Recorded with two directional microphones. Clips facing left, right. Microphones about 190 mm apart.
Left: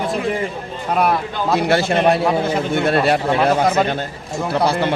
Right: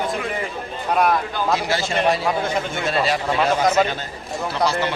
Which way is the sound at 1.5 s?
60° left (ahead or behind).